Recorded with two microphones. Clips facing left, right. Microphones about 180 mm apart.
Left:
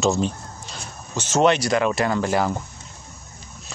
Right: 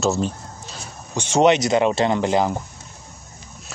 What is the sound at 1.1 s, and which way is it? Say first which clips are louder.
Speech: right 2 dB; 15° right (ahead or behind).